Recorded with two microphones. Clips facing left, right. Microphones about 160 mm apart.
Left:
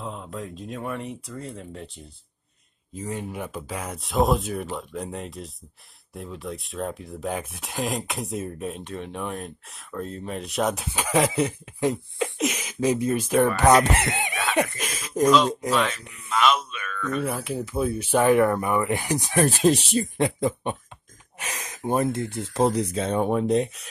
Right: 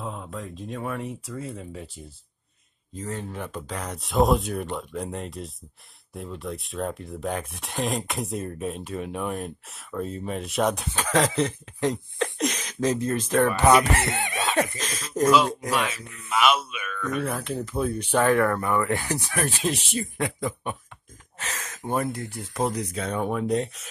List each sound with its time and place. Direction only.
0.0 s speech: centre (ahead or behind)
3.0 s speech: 10° left (ahead or behind)
15.7 s speech: 10° right (ahead or behind)
17.2 s speech: 5° left (ahead or behind)
19.4 s speech: 40° left (ahead or behind)